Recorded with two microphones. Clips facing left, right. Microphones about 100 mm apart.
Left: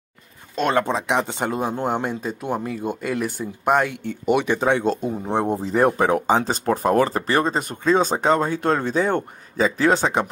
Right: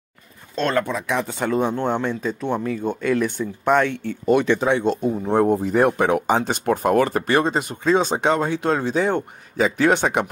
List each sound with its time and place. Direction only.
0.6 s speech: 15° left (ahead or behind)
0.8 s speech: 25° left (ahead or behind)
1.6 s speech: 5° left (ahead or behind)
4.6 s speech: 45° left (ahead or behind)
5.3 s speech: 25° left (ahead or behind)